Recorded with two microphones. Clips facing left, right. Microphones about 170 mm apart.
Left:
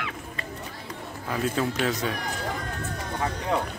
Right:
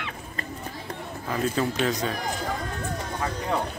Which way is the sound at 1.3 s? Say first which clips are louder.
Right 1 dB; 5° left (ahead or behind).